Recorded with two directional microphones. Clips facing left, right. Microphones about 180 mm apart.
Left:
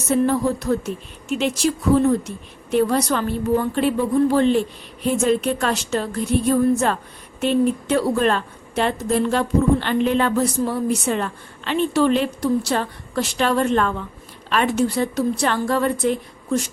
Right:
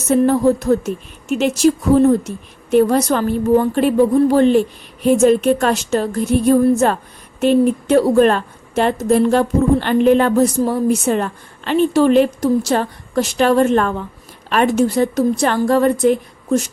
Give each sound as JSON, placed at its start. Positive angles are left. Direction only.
{"t": 0.1, "sound": "a woman's voice", "side_deg": -45}